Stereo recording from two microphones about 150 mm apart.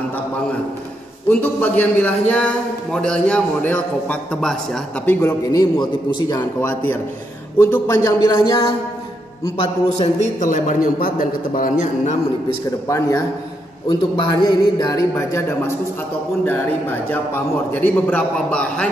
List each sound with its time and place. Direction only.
1.3 s a man's voice: 10° left (ahead or behind); by 6.4 s 30° left (ahead or behind)
6.6 s a man's voice: 10° left (ahead or behind); by 8.7 s 35° left (ahead or behind)
9.6 s a man's voice: 45° left (ahead or behind)
12.6 s a man's voice: 20° left (ahead or behind)
13.8 s a man's voice: 30° left (ahead or behind)
17.1 s a man's voice: 10° left (ahead or behind)